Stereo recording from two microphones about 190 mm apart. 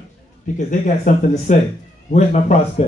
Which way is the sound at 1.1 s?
40° left (ahead or behind).